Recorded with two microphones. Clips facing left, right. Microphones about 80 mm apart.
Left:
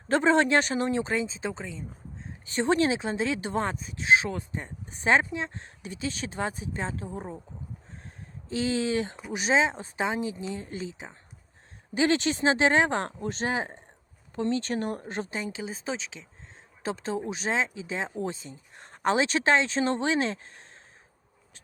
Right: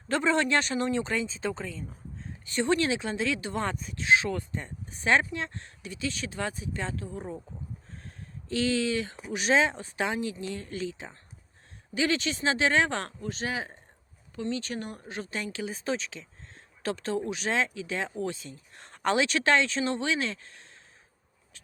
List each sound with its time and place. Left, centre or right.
0.1 s speech: left
2.5 s speech: left
7.9 s a sound: left
9.5 s speech: centre
11.9 s speech: left
13.1 s speech: left
15.2 s speech: left